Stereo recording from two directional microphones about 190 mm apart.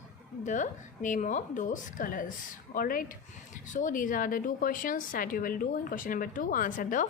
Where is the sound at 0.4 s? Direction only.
40° left (ahead or behind).